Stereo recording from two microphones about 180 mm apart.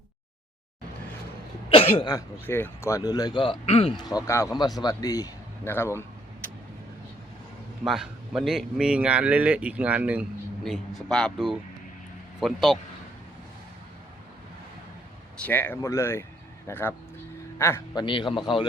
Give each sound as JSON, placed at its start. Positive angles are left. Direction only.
{"t": 1.7, "sound": "speech", "side_deg": 30}
{"t": 2.0, "sound": "a man's voice", "side_deg": 15}
{"t": 4.0, "sound": "a man's voice", "side_deg": 20}
{"t": 7.9, "sound": "speech", "side_deg": 0}
{"t": 15.4, "sound": "speech", "side_deg": 10}
{"t": 18.0, "sound": "a man's voice", "side_deg": 25}